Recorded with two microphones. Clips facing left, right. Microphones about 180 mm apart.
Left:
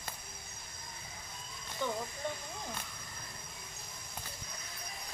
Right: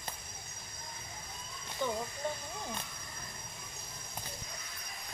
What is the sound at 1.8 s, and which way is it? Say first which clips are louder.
Speech: right 1 dB; 15° right (ahead or behind).